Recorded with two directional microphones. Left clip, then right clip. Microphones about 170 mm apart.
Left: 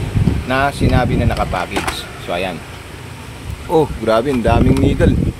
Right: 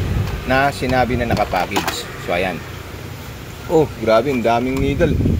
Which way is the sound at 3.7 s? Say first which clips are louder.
Left 1 dB; 20° left (ahead or behind).